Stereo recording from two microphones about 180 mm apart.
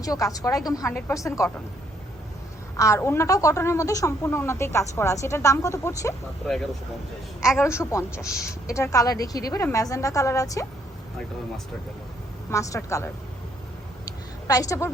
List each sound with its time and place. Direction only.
0.0 s a woman's voice: 20° left (ahead or behind)
2.7 s a woman's voice: 15° left (ahead or behind)
7.6 s a woman's voice: 15° left (ahead or behind)
12.5 s a woman's voice: 15° left (ahead or behind)
14.4 s a woman's voice: 20° left (ahead or behind)